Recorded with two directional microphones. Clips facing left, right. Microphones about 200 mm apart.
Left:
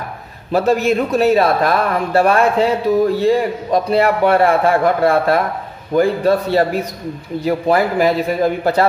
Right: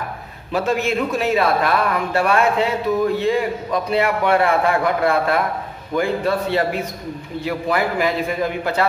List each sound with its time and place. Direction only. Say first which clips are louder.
0.5 s a man's voice: left 5 dB; 40° left (ahead or behind)